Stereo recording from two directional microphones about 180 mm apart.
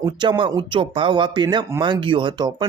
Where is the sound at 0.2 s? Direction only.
25° right (ahead or behind).